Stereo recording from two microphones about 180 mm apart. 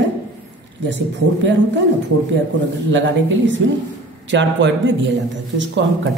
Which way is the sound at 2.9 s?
90° right.